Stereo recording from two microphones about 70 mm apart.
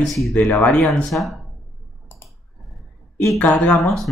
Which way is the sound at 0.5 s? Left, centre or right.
Left.